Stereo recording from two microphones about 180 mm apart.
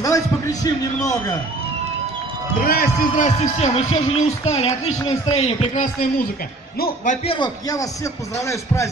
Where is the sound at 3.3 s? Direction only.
35° left (ahead or behind).